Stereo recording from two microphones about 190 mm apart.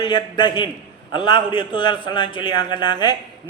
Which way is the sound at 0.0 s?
20° left (ahead or behind).